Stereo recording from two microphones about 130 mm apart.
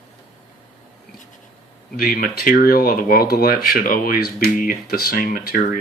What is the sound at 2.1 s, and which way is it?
Speech, 90° left.